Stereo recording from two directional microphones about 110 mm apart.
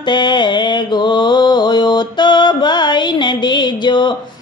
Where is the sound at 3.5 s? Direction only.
45° left (ahead or behind).